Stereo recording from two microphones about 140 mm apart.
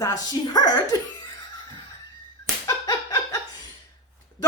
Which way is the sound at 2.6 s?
25° left (ahead or behind).